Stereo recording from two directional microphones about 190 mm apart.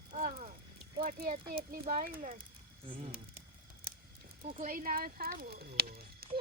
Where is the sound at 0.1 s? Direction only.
35° right (ahead or behind).